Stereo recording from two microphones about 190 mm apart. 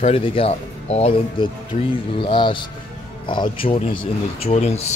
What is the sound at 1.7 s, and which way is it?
Speech, 45° left (ahead or behind).